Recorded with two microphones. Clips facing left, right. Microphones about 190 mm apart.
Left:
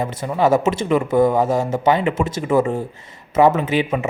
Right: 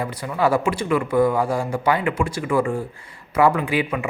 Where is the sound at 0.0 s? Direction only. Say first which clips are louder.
Left 3 dB; 25° left (ahead or behind).